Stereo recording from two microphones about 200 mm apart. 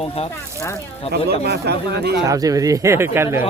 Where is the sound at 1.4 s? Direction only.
55° right (ahead or behind).